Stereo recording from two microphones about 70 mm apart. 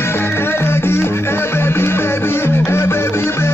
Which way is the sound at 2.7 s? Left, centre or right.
Left.